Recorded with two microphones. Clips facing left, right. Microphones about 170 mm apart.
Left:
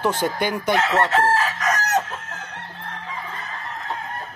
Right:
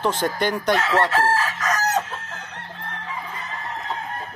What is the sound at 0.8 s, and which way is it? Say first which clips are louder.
Speech: left 1 dB; 20° left (ahead or behind).